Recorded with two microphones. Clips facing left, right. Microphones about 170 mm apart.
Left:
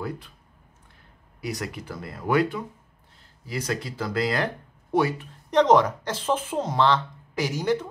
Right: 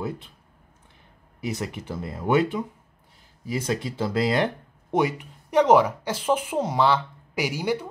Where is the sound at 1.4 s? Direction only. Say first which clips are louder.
Right 2 dB; 25° right (ahead or behind).